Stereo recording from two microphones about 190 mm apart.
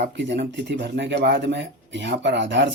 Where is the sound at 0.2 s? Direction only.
65° right (ahead or behind).